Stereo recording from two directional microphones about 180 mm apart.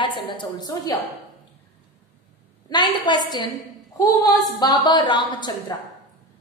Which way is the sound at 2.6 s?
25° left (ahead or behind).